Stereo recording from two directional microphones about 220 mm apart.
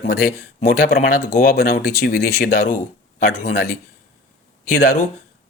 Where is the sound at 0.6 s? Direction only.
40° left (ahead or behind).